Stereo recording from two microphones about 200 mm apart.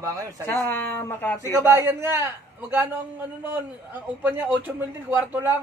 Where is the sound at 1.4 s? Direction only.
15° right (ahead or behind).